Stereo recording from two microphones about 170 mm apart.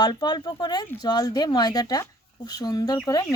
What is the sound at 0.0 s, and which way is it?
Speech, 25° left (ahead or behind).